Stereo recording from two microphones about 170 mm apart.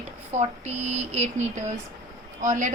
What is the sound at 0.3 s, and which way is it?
A woman's voice, 40° right (ahead or behind).